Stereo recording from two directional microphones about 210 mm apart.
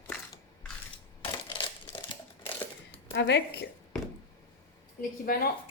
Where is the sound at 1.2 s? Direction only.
25° left (ahead or behind).